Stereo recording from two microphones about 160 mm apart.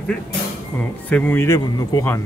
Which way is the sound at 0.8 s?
10° left (ahead or behind).